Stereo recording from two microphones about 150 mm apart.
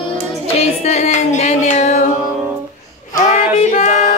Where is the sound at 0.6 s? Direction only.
45° left (ahead or behind).